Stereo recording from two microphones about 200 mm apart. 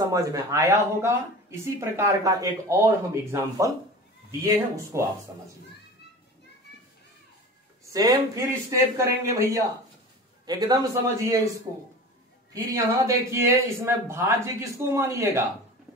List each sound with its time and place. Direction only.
0.0 s speech: 15° right (ahead or behind)
7.9 s a man's voice: 20° right (ahead or behind)
12.5 s speech: 15° right (ahead or behind)